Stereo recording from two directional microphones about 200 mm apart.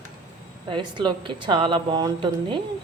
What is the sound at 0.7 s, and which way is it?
Speech, 25° right (ahead or behind).